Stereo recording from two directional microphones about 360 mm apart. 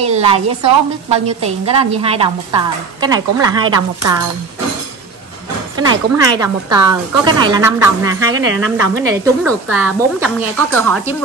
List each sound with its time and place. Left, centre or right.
0.0 s a woman's voice: centre
5.9 s a woman's voice: centre
8.5 s a woman's voice: right
9.1 s a woman's voice: centre